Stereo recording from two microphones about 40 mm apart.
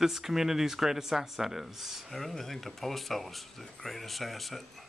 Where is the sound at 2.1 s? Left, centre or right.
Centre.